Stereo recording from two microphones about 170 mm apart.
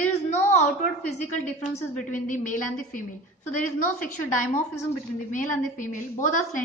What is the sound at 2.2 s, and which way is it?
A woman's voice, 50° left (ahead or behind).